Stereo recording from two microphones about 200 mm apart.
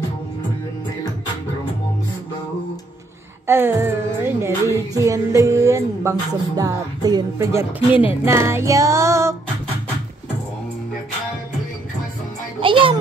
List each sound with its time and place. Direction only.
3.4 s music: 10° right (ahead or behind)
7.9 s music: 25° left (ahead or behind)
8.3 s music: 15° right (ahead or behind)
12.5 s music: 25° right (ahead or behind)